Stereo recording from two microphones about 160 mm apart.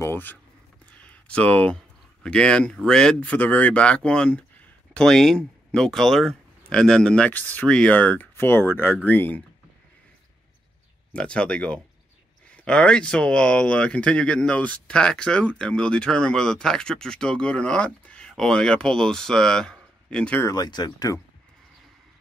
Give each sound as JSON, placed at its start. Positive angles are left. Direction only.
{"t": 0.0, "sound": "speech", "side_deg": 15}
{"t": 1.0, "sound": "a sound", "side_deg": 10}
{"t": 2.2, "sound": "speech", "side_deg": 5}
{"t": 11.1, "sound": "speech", "side_deg": 5}
{"t": 20.4, "sound": "speech", "side_deg": 25}